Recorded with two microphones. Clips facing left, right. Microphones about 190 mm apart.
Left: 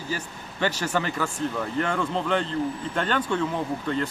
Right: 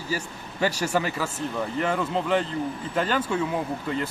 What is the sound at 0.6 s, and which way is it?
Speech, 10° right (ahead or behind).